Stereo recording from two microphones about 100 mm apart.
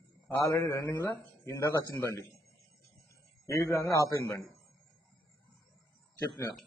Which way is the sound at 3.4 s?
30° left (ahead or behind).